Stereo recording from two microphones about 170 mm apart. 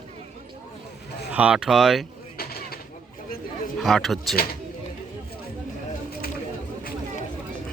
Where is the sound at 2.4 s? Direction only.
65° left (ahead or behind).